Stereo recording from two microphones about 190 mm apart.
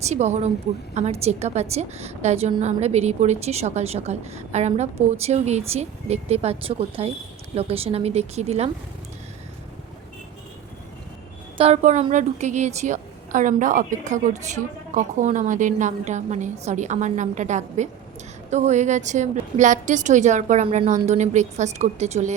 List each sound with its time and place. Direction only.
0.0 s a woman's voice: 35° right (ahead or behind)
11.5 s a woman's voice: 30° right (ahead or behind)